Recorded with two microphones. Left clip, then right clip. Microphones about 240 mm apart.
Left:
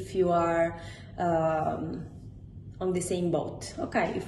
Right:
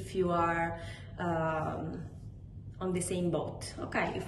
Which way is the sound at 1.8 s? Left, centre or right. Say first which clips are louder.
Left 4 dB; centre.